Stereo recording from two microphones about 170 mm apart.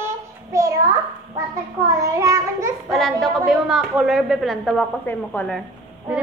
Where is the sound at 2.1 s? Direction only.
20° right (ahead or behind).